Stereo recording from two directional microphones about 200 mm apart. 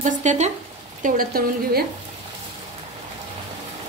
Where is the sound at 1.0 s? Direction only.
45° right (ahead or behind).